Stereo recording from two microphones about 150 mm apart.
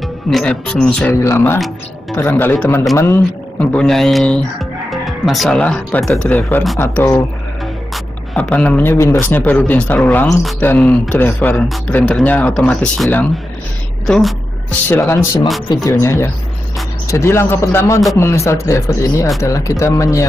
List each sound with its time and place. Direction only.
0.3 s speech: 5° left (ahead or behind)
1.2 s speech: 15° left (ahead or behind)
3.7 s speech: 5° left (ahead or behind)
7.9 s a sound: 10° left (ahead or behind)
8.9 s speech: 20° left (ahead or behind)
14.0 s a sound: 5° left (ahead or behind)
14.9 s speech: 15° left (ahead or behind)